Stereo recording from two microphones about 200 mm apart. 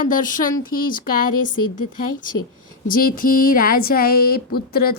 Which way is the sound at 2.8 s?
45° left (ahead or behind).